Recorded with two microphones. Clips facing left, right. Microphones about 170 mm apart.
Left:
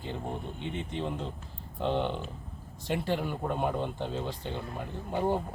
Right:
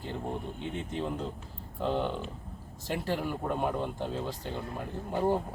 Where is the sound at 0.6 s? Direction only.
45° right (ahead or behind).